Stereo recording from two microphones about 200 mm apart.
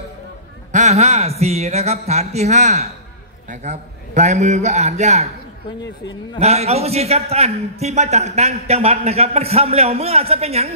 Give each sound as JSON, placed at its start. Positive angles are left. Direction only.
{"t": 0.7, "sound": "a man's voice", "side_deg": -35}
{"t": 6.4, "sound": "a man's voice", "side_deg": -30}